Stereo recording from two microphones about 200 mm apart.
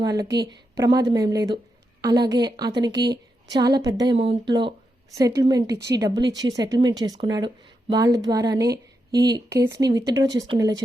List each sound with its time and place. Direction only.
0.0 s a woman's voice: 20° right (ahead or behind)